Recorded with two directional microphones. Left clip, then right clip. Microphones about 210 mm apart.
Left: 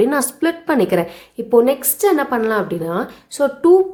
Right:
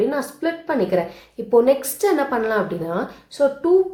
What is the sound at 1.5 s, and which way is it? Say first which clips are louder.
Speech: left 2 dB; 30° left (ahead or behind).